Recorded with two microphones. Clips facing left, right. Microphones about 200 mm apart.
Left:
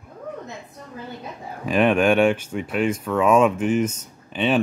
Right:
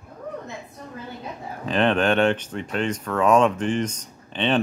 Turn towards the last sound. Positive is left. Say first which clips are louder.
# left 2 dB
turn(degrees=5)  # may be behind; listen again after turning